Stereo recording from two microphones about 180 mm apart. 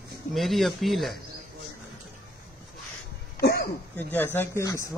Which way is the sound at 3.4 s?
55° left (ahead or behind).